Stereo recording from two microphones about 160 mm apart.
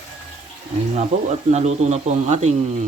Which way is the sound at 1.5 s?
45° right (ahead or behind).